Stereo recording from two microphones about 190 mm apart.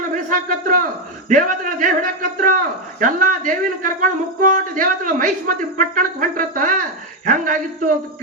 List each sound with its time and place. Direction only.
0.3 s a man's voice: 45° right (ahead or behind)